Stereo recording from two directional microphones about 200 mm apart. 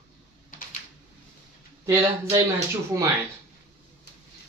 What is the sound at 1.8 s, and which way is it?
Speech, 15° right (ahead or behind).